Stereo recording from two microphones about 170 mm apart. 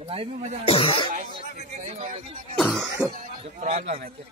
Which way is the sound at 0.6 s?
30° left (ahead or behind).